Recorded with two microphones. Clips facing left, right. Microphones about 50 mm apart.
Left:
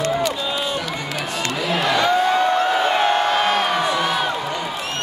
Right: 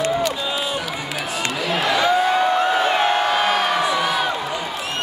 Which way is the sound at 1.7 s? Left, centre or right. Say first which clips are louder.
Even; centre.